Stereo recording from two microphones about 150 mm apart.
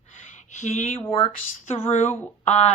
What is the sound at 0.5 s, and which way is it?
Speech, 50° left (ahead or behind).